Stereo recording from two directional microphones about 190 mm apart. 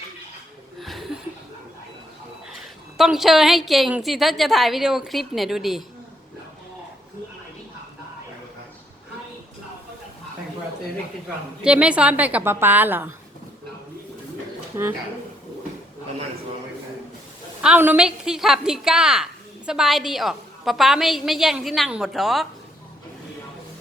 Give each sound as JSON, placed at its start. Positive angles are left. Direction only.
{"t": 0.8, "sound": "chuckle", "side_deg": 0}
{"t": 3.0, "sound": "a woman's voice", "side_deg": 0}
{"t": 11.6, "sound": "a woman's voice", "side_deg": -5}
{"t": 17.6, "sound": "a woman's voice", "side_deg": -5}